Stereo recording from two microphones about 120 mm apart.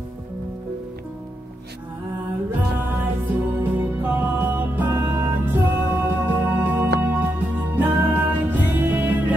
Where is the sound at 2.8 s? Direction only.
15° right (ahead or behind).